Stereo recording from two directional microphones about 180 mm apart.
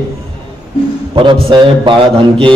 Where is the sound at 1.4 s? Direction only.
30° right (ahead or behind).